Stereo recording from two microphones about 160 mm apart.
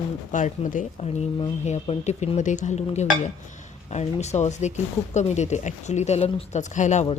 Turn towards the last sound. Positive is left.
turn(degrees=45)  # may be behind; listen again after turning